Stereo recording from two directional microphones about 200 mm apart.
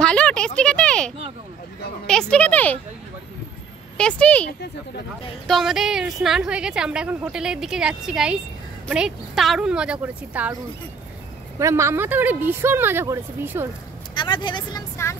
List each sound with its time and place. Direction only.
0.0 s a sound: 5° left (ahead or behind)
2.0 s a woman's voice: 5° left (ahead or behind)
4.0 s a woman's voice: 5° left (ahead or behind)
5.5 s a woman's voice: centre (ahead or behind)
14.1 s speech: 25° left (ahead or behind)